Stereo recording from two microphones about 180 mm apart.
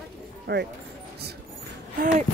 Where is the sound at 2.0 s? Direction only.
50° right (ahead or behind).